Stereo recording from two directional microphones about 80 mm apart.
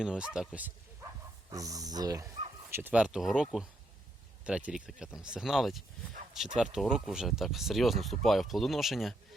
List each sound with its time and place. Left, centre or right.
0.0 s speech: centre
1.5 s speech: right
2.6 s speech: right
2.9 s speech: centre